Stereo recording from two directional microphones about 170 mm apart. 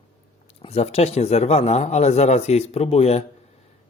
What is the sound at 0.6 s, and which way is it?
Speech, 35° left (ahead or behind).